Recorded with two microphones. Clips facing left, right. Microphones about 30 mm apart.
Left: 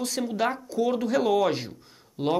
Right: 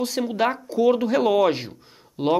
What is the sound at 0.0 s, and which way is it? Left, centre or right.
Speech, centre.